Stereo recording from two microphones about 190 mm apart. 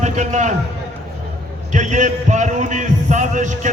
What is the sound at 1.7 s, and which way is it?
A man's voice, 40° right (ahead or behind).